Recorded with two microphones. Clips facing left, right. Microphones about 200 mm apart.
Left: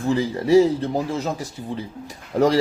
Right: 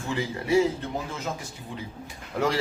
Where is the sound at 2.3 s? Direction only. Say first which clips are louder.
Left 8 dB; 40° left (ahead or behind).